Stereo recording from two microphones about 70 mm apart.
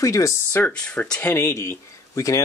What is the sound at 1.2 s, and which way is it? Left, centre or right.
Speech, left.